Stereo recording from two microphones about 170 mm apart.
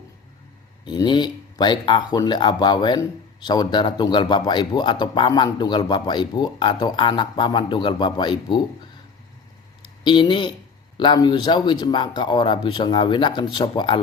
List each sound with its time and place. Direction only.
0.9 s speech: 25° left (ahead or behind)
10.0 s speech: 30° left (ahead or behind)